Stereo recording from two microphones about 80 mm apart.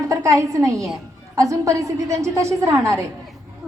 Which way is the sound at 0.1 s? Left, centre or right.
Right.